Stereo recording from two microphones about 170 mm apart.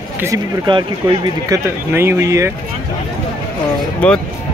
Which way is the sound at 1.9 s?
15° right (ahead or behind).